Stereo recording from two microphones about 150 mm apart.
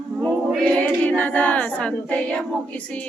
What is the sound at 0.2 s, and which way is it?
Choir, 5° left (ahead or behind).